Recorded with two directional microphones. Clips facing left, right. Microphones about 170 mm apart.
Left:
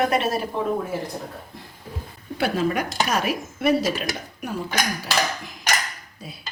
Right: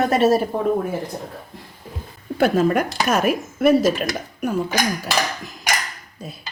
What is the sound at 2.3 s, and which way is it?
Speech, 45° right (ahead or behind).